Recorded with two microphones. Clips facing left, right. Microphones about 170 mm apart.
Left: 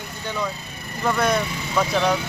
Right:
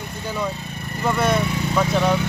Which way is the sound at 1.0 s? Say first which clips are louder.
Right 1 dB; 5° right (ahead or behind).